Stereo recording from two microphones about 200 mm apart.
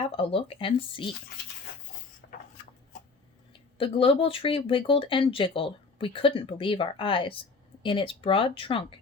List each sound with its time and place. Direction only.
0.0 s speech: 30° left (ahead or behind)
2.2 s a sound: 50° left (ahead or behind)
3.8 s speech: 25° left (ahead or behind)